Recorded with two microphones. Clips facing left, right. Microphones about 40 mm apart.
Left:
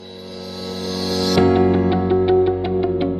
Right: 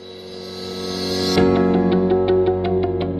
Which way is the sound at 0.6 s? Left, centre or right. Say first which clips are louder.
Left 1 dB; centre.